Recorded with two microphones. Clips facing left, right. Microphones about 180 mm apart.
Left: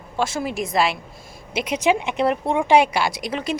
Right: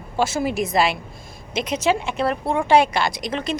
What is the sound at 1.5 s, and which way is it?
A woman's voice, 10° left (ahead or behind).